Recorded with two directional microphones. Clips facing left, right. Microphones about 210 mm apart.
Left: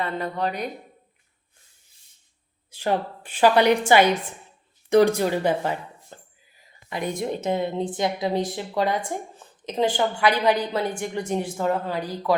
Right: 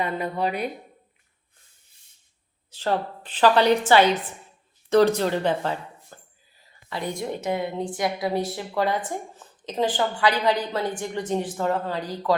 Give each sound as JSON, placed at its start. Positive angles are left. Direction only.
{"t": 0.0, "sound": "a woman's voice", "side_deg": -10}
{"t": 2.6, "sound": "a woman's voice", "side_deg": 15}
{"t": 6.1, "sound": "whispering", "side_deg": 25}
{"t": 6.9, "sound": "a woman's voice", "side_deg": 20}